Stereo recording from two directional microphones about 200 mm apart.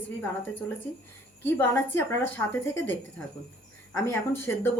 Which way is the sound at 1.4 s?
10° left (ahead or behind).